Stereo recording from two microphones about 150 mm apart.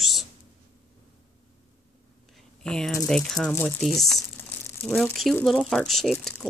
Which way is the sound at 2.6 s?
5° left (ahead or behind).